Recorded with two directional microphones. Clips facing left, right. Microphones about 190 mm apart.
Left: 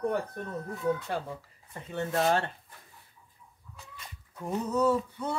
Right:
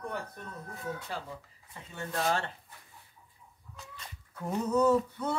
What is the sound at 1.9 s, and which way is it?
Speech, 55° left (ahead or behind).